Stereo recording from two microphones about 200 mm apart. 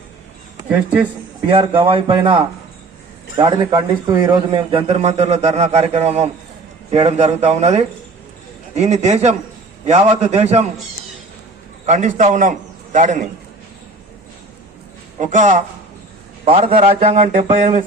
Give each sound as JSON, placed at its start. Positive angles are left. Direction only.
{"t": 0.5, "sound": "speech", "side_deg": -10}
{"t": 1.5, "sound": "a man's voice", "side_deg": -25}
{"t": 11.9, "sound": "a man's voice", "side_deg": -35}
{"t": 15.2, "sound": "a man's voice", "side_deg": -40}
{"t": 16.5, "sound": "a man's voice", "side_deg": -30}